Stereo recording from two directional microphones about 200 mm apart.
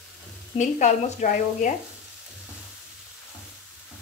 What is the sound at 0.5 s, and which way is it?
A woman's voice, 35° left (ahead or behind).